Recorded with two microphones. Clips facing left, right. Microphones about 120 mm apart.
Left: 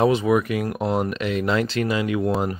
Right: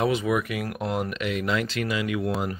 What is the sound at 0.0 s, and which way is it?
Speech, 30° left (ahead or behind).